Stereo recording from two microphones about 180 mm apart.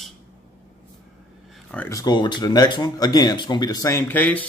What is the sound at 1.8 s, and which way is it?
Speech, 20° left (ahead or behind).